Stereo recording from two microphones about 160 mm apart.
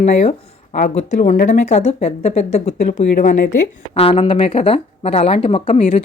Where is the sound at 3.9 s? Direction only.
40° left (ahead or behind).